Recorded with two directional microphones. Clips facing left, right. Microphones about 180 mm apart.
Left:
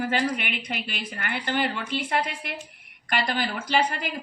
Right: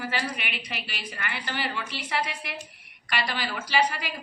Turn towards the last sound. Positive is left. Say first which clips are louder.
# left 1 dB
turn(degrees=50)  # may be behind; listen again after turning